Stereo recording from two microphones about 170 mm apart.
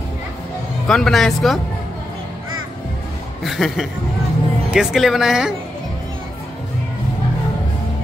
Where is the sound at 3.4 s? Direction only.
Centre (ahead or behind).